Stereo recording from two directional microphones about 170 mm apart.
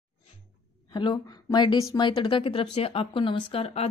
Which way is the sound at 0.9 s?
25° left (ahead or behind).